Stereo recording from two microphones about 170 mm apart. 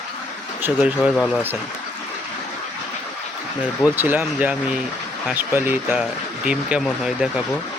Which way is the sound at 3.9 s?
10° right (ahead or behind).